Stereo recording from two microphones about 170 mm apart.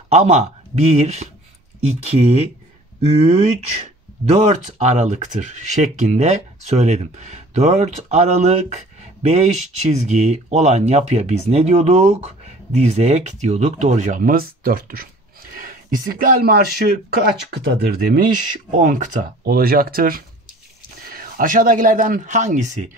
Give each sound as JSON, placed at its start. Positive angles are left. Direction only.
{"t": 0.1, "sound": "speech", "side_deg": -40}
{"t": 19.4, "sound": "speech", "side_deg": -60}